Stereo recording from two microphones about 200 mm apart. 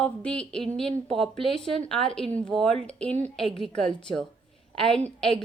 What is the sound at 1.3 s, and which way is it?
Speech, 25° left (ahead or behind).